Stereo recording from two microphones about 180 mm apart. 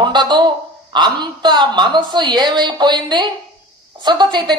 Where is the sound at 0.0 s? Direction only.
25° right (ahead or behind).